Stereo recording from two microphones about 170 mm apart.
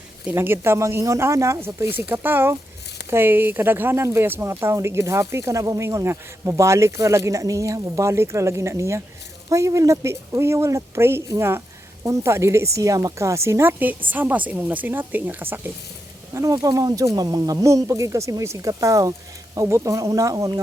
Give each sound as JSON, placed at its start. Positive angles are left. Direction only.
{"t": 0.3, "sound": "speech", "side_deg": -15}